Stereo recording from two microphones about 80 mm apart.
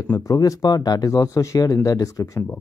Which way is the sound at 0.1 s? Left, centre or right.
Left.